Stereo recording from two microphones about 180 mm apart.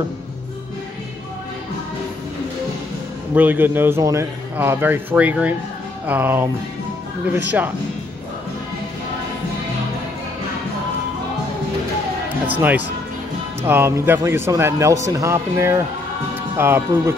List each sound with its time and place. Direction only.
3.3 s a man's voice: 10° right (ahead or behind)
12.4 s a man's voice: 10° right (ahead or behind)